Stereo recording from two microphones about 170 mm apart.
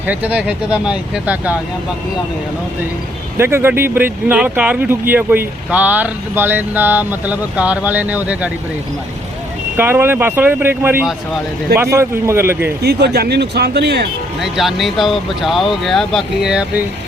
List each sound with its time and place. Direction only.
0.0 s speech: 10° right (ahead or behind)
3.3 s speech: 15° right (ahead or behind)
9.7 s speech: 10° right (ahead or behind)
12.8 s speech: 70° right (ahead or behind)
14.4 s speech: centre (ahead or behind)